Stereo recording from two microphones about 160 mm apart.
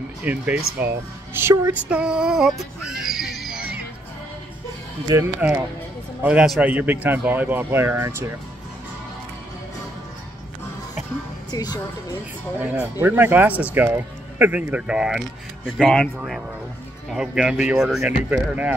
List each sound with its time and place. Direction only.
0.2 s speech: 10° right (ahead or behind)
5.1 s speech: 15° right (ahead or behind)
11.5 s speech: 25° left (ahead or behind)
12.5 s speech: 10° right (ahead or behind)